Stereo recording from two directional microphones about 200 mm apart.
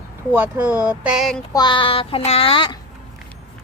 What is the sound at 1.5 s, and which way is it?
Speech, 20° left (ahead or behind).